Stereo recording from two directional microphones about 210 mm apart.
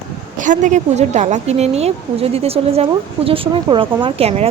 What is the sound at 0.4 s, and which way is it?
A woman's voice, 35° right (ahead or behind).